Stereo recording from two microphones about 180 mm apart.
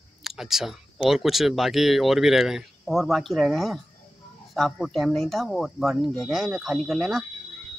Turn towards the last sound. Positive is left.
turn(degrees=0)  # may be behind; listen again after turning